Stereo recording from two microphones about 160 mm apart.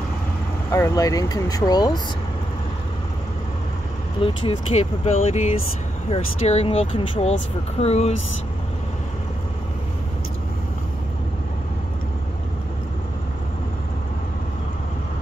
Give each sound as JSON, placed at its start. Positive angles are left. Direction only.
{"t": 0.7, "sound": "speech", "side_deg": 20}
{"t": 4.2, "sound": "speech", "side_deg": 35}